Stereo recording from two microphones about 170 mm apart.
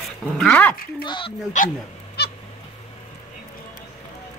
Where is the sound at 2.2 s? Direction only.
75° left (ahead or behind).